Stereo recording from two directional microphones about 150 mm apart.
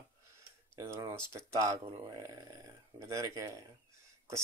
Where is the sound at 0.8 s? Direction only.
20° right (ahead or behind).